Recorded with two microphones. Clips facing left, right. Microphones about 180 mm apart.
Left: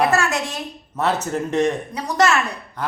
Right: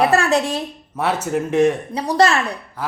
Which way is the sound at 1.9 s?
30° right (ahead or behind).